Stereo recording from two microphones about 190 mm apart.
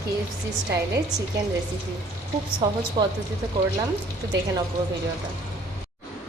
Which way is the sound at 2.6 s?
25° right (ahead or behind).